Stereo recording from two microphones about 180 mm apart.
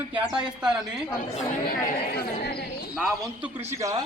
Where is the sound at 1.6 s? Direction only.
55° left (ahead or behind).